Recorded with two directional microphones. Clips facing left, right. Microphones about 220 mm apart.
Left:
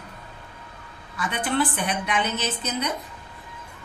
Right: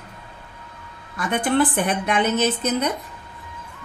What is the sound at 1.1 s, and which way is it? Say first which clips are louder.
A woman's voice: right 5 dB; 50° right (ahead or behind).